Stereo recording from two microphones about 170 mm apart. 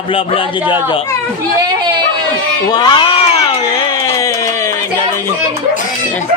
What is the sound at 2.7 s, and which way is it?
Speech, 25° left (ahead or behind).